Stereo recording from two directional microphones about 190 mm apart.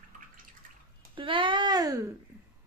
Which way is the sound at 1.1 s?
25° right (ahead or behind).